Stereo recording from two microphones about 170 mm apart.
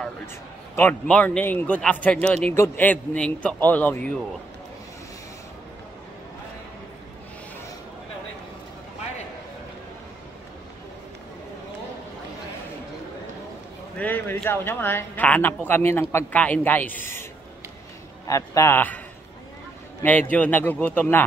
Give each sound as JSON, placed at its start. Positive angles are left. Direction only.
{"t": 0.7, "sound": "speech", "side_deg": 10}
{"t": 13.9, "sound": "speech", "side_deg": 10}
{"t": 20.0, "sound": "speech", "side_deg": 10}